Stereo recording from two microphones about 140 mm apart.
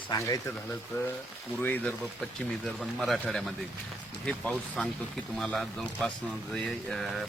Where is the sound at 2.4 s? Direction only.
Centre (ahead or behind).